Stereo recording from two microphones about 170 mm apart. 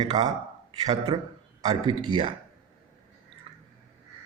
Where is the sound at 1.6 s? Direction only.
25° right (ahead or behind).